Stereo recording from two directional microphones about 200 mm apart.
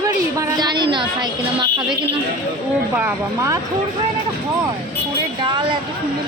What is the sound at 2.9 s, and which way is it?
Speech, 10° right (ahead or behind).